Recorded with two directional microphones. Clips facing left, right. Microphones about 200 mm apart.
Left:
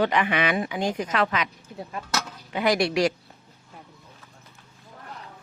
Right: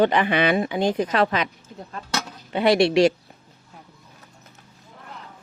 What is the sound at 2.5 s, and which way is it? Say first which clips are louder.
Speech: right 5 dB; 30° right (ahead or behind).